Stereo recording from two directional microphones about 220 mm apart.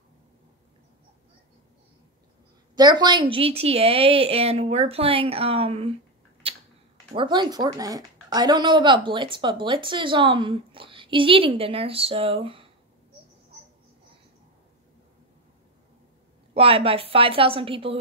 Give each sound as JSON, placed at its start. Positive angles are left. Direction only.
{"t": 2.7, "sound": "speech", "side_deg": -20}
{"t": 7.1, "sound": "speech", "side_deg": -20}
{"t": 16.5, "sound": "speech", "side_deg": -25}